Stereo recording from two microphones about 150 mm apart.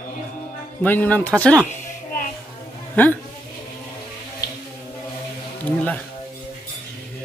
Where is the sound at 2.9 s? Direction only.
10° left (ahead or behind).